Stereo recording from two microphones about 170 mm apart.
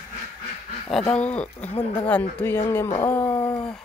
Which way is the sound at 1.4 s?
40° left (ahead or behind).